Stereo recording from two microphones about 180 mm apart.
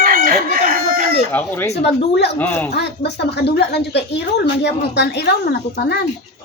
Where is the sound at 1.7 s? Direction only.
65° left (ahead or behind).